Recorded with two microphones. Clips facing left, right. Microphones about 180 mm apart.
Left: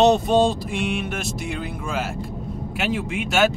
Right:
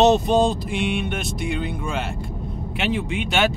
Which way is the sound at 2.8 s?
Centre (ahead or behind).